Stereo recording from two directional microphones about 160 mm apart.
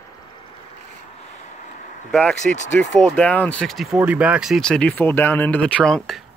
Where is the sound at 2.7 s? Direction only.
5° left (ahead or behind).